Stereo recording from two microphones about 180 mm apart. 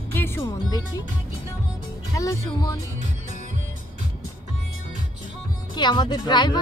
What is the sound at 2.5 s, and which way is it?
Speech, 20° left (ahead or behind).